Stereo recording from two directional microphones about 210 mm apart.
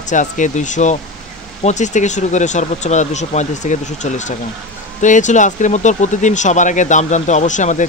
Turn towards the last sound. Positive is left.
turn(degrees=35)  # may be behind; listen again after turning